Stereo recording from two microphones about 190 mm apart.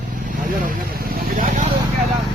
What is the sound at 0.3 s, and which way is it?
Vehicle, 45° right (ahead or behind).